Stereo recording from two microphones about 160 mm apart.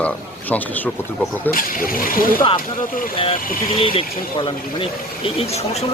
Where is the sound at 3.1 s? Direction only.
35° left (ahead or behind).